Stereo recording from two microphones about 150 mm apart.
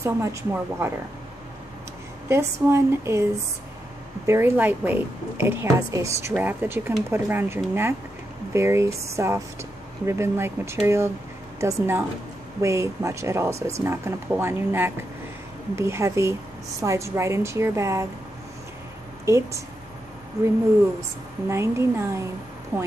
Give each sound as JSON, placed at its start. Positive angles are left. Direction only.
{"t": 0.0, "sound": "speech", "side_deg": -20}
{"t": 2.2, "sound": "a woman's voice", "side_deg": -15}
{"t": 4.3, "sound": "a woman's voice", "side_deg": -15}
{"t": 19.2, "sound": "speech", "side_deg": -20}
{"t": 21.5, "sound": "a woman's voice", "side_deg": -20}